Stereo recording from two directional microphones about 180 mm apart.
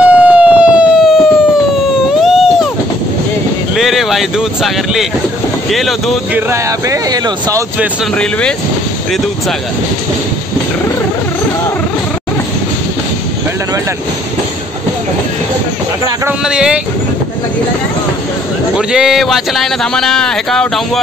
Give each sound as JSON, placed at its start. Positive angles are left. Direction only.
{"t": 0.0, "sound": "siren", "side_deg": -5}
{"t": 2.2, "sound": "a sound", "side_deg": 0}
{"t": 3.7, "sound": "a sound", "side_deg": 0}
{"t": 5.7, "sound": "speech", "side_deg": 0}
{"t": 6.3, "sound": "speech", "side_deg": -15}
{"t": 8.2, "sound": "speech", "side_deg": 5}
{"t": 16.3, "sound": "speech", "side_deg": -5}
{"t": 18.8, "sound": "speech", "side_deg": -5}